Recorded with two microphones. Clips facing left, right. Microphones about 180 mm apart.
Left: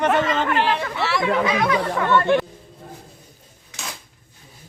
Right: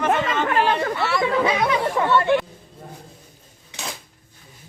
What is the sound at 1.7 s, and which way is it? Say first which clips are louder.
Speech: even; 20° right (ahead or behind).